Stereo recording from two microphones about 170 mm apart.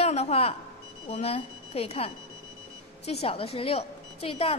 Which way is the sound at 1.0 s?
35° left (ahead or behind).